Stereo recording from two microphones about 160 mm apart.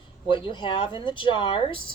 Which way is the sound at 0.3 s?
30° left (ahead or behind).